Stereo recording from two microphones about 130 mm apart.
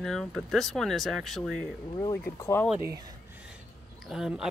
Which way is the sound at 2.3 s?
25° left (ahead or behind).